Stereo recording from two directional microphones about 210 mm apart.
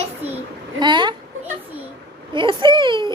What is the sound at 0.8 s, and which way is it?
Speech, 20° right (ahead or behind).